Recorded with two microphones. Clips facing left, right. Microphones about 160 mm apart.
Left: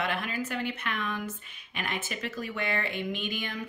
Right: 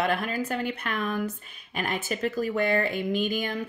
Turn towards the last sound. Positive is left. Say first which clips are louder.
# right 7 dB
turn(degrees=-40)  # may be behind; listen again after turning